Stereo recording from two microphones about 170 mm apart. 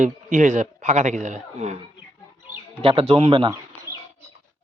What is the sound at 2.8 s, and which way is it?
Speech, 35° right (ahead or behind).